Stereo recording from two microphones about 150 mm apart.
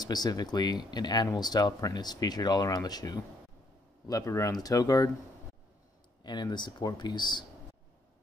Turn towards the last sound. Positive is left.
turn(degrees=30)  # may be behind; listen again after turning